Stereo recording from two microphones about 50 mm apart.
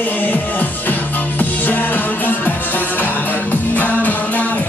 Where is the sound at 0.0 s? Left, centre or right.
Left.